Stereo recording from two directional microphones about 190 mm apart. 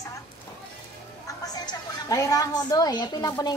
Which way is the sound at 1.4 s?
20° left (ahead or behind).